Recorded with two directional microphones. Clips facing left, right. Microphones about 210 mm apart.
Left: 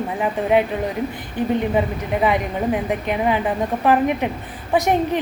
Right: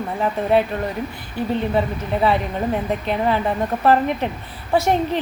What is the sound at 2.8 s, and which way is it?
A woman's voice, 10° left (ahead or behind).